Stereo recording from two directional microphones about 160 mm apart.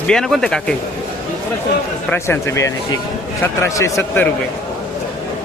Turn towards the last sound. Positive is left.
turn(degrees=20)  # may be behind; listen again after turning